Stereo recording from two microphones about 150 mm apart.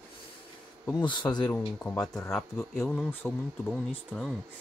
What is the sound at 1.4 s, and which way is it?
Speech, 10° left (ahead or behind).